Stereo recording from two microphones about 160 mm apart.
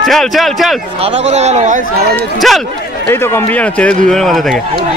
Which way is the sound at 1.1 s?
45° right (ahead or behind).